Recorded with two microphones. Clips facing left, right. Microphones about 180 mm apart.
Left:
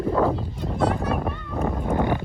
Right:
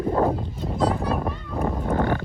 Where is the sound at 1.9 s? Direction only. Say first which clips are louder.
Even; 15° left (ahead or behind).